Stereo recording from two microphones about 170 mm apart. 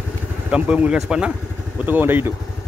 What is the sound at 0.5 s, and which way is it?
Speech, 5° right (ahead or behind).